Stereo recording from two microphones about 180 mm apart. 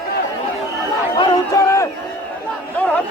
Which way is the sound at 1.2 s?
15° left (ahead or behind).